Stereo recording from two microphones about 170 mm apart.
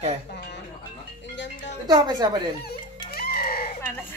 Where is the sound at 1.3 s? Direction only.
90° left.